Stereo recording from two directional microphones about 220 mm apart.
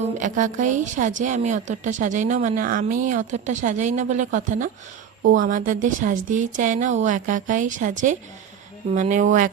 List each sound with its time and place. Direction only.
0.2 s speech: 35° right (ahead or behind)